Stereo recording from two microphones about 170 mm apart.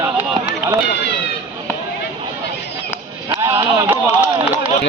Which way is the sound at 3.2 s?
15° right (ahead or behind).